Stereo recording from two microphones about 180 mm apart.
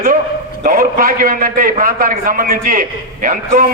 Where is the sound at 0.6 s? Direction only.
50° right (ahead or behind).